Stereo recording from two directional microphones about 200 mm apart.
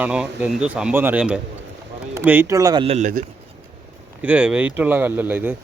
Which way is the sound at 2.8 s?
35° right (ahead or behind).